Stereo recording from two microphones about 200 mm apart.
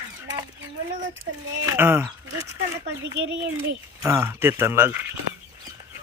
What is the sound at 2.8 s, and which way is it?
Speech, 60° right (ahead or behind).